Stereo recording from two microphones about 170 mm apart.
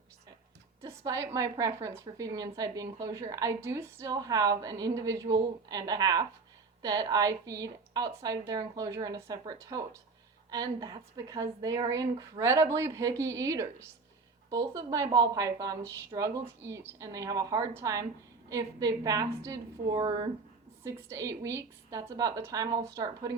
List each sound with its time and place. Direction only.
0.8 s a woman's voice: 15° right (ahead or behind)